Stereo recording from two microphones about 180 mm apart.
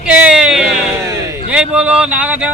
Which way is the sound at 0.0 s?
5° right (ahead or behind).